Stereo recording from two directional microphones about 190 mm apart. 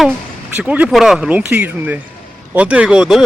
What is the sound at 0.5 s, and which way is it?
Speech, 5° right (ahead or behind).